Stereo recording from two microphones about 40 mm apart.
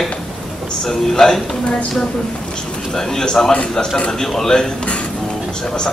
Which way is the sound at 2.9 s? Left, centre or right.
Centre.